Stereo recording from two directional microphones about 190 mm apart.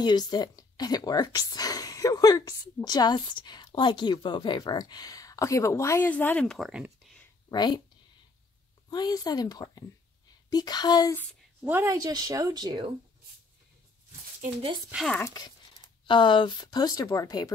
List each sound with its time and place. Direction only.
0.0 s speech: 20° left (ahead or behind); by 7.2 s centre (ahead or behind)
7.5 s speech: 20° left (ahead or behind)
8.9 s speech: 20° left (ahead or behind)
11.6 s a woman's voice: 10° right (ahead or behind)
14.4 s speech: 30° right (ahead or behind)
15.0 s speech: 10° left (ahead or behind)
16.1 s speech: 25° left (ahead or behind)